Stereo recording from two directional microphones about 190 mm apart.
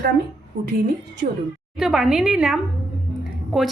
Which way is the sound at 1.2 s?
45° right (ahead or behind).